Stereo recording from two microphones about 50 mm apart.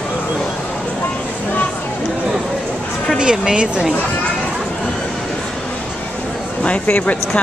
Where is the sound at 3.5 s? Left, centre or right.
Centre.